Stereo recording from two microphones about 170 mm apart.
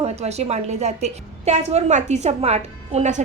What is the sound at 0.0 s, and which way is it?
A woman's voice, 40° right (ahead or behind).